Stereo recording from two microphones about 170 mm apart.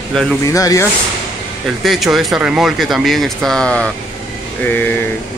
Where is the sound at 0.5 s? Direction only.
20° left (ahead or behind).